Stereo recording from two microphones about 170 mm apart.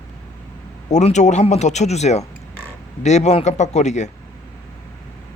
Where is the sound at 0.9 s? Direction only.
45° left (ahead or behind).